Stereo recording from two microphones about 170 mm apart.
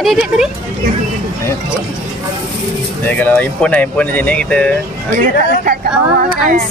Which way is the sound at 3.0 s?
10° left (ahead or behind).